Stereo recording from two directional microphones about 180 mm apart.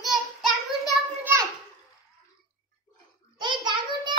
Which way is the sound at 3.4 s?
25° right (ahead or behind).